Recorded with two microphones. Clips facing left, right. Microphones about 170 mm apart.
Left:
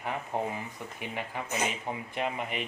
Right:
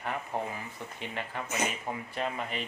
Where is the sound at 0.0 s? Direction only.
15° left (ahead or behind).